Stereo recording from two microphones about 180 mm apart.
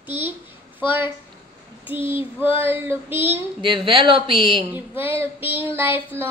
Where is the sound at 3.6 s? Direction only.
25° right (ahead or behind).